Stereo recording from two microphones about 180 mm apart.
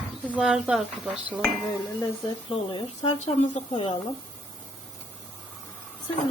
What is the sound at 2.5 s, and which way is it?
Speech, 25° left (ahead or behind).